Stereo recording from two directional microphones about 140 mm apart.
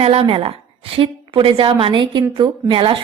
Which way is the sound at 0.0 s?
45° right (ahead or behind).